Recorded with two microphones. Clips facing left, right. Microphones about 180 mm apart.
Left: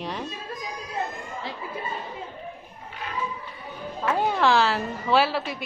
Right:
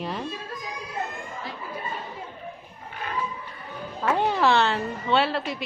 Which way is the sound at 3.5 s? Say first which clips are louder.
Left 1 dB; 5° left (ahead or behind).